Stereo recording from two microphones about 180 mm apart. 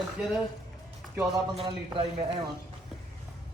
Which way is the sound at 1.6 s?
30° right (ahead or behind).